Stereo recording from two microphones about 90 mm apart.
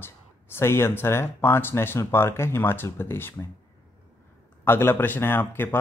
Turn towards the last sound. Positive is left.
turn(degrees=25)  # may be behind; listen again after turning